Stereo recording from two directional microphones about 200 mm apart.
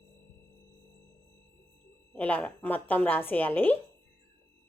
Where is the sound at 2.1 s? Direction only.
5° left (ahead or behind).